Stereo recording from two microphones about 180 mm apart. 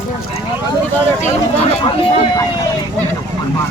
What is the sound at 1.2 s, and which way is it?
Speech, 35° left (ahead or behind).